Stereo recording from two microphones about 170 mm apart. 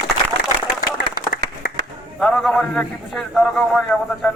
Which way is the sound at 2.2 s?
Centre (ahead or behind).